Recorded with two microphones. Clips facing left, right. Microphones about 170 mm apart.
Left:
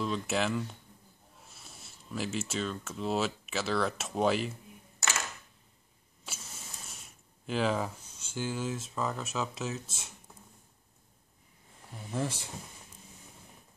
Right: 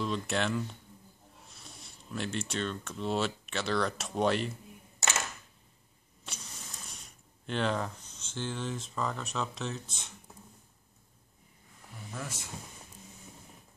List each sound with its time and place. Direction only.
0.0 s speech: centre (ahead or behind)
6.2 s speech: 5° left (ahead or behind)
12.1 s speech: 30° left (ahead or behind)